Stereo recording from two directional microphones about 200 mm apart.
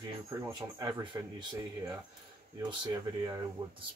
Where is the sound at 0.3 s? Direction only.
15° right (ahead or behind).